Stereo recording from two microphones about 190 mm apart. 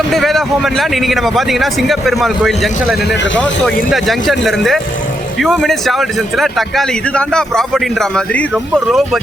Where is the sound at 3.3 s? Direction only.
5° left (ahead or behind).